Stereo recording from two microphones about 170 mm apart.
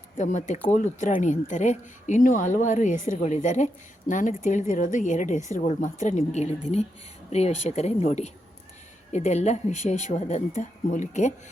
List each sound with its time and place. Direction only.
0.2 s speech: 45° left (ahead or behind)